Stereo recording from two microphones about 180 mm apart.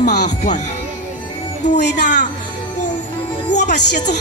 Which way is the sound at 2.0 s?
45° left (ahead or behind).